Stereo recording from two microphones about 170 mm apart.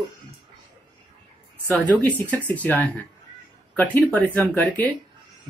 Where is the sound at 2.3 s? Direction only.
10° left (ahead or behind).